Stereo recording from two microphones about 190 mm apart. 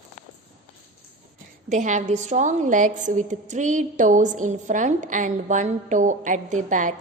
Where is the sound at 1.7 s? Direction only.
40° right (ahead or behind).